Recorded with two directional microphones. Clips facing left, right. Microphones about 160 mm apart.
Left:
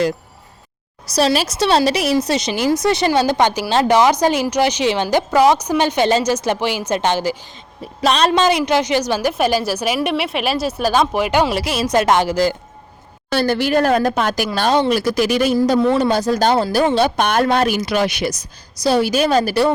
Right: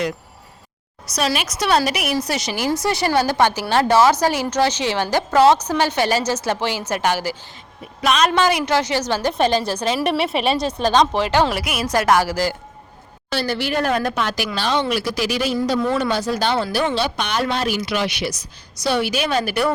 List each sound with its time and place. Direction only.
1.1 s a woman's voice: 30° left (ahead or behind); by 11.5 s 15° left (ahead or behind)
11.5 s a woman's voice: 25° left (ahead or behind)
13.3 s speech: 50° left (ahead or behind)
15.8 s speech: 35° left (ahead or behind)